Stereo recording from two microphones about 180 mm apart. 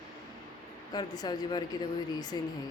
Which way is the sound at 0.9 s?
20° left (ahead or behind).